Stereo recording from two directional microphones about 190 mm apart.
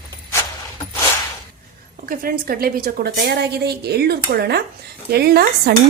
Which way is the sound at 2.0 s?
50° right (ahead or behind).